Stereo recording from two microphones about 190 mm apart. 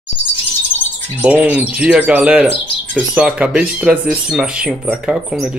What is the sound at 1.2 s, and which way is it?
Speech, 10° right (ahead or behind).